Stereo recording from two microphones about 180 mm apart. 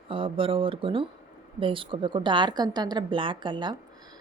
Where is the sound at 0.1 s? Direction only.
30° right (ahead or behind).